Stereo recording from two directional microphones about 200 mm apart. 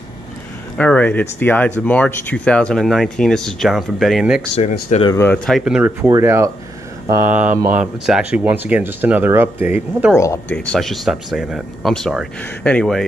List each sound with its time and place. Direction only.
0.7 s speech: 5° left (ahead or behind)
4.8 s speech: 30° left (ahead or behind)
5.1 s speech: 10° left (ahead or behind); by 10.1 s 10° right (ahead or behind)
10.1 s speech: 15° left (ahead or behind)